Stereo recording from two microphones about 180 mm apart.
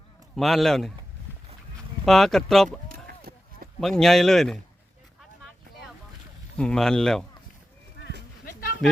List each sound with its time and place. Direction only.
0.3 s speech: centre (ahead or behind)
2.0 s speech: centre (ahead or behind)
2.6 s a sound: 55° right (ahead or behind)
3.8 s speech: centre (ahead or behind)
6.6 s speech: 5° left (ahead or behind)
8.8 s speech: centre (ahead or behind)